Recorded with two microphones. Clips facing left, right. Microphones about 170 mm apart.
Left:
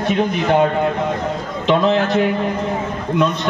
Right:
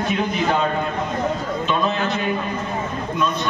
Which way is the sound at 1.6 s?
75° left (ahead or behind).